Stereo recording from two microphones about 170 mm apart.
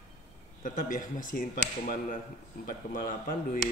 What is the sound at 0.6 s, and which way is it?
Speech, 50° left (ahead or behind).